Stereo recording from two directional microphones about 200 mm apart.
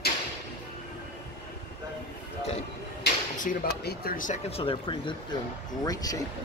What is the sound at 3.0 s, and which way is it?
Speech, 45° left (ahead or behind).